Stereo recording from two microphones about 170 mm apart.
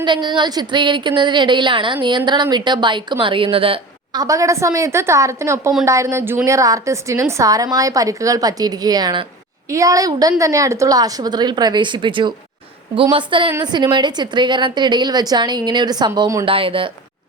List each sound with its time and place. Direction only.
0.0 s speech: 25° right (ahead or behind)
4.2 s a woman's voice: 20° right (ahead or behind)
16.5 s speech: 30° right (ahead or behind)